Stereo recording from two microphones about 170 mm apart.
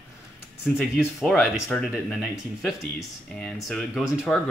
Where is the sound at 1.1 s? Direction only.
Centre (ahead or behind).